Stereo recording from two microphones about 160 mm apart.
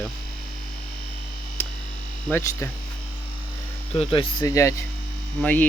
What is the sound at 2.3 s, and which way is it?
Speech, 20° left (ahead or behind).